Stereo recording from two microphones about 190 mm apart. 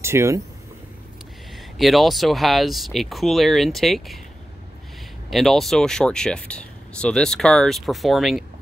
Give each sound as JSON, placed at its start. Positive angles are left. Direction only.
{"t": 0.0, "sound": "speech", "side_deg": -15}
{"t": 1.5, "sound": "speech", "side_deg": 0}
{"t": 5.3, "sound": "speech", "side_deg": 0}